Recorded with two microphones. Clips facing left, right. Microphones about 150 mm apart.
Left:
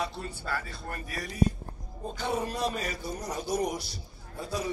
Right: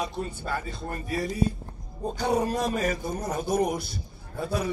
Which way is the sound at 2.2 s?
40° right (ahead or behind).